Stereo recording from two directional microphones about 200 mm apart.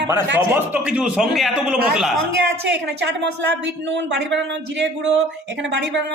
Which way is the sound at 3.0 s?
60° right (ahead or behind).